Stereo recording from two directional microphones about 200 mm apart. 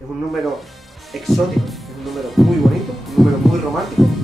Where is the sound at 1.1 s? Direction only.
Centre (ahead or behind).